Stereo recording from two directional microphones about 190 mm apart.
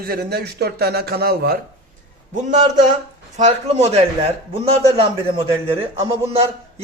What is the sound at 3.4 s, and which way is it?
A man's voice, 35° right (ahead or behind).